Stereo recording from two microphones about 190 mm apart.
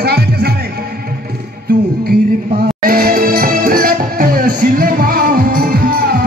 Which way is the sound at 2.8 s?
50° right (ahead or behind).